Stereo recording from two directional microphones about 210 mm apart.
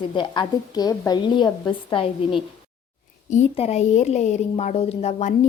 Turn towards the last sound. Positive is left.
turn(degrees=30)  # may be behind; listen again after turning